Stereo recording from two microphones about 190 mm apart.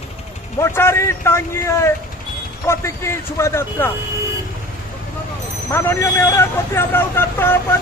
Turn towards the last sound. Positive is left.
turn(degrees=10)  # may be behind; listen again after turning